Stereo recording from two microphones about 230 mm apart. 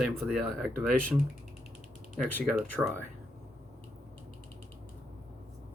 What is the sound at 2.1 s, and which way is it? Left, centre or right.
Speech, centre.